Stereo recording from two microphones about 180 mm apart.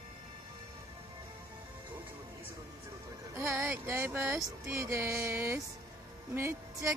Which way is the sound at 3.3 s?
15° right (ahead or behind).